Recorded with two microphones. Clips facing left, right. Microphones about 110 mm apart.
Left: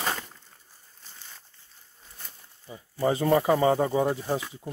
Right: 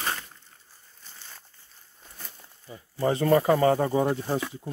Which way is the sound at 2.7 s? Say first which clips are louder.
Even; 20° left (ahead or behind).